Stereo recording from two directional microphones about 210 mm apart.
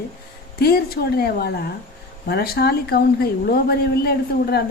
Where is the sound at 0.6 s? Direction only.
45° left (ahead or behind).